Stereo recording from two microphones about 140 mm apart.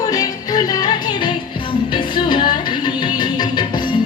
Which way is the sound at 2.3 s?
35° left (ahead or behind).